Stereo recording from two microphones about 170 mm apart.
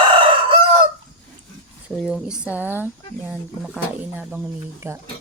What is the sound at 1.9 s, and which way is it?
Speech, centre (ahead or behind).